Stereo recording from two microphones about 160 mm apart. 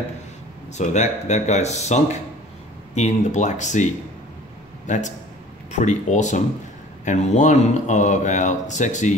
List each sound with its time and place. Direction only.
0.7 s a man's voice: 45° left (ahead or behind)